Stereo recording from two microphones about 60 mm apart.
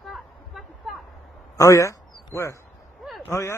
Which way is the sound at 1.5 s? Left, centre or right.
Left.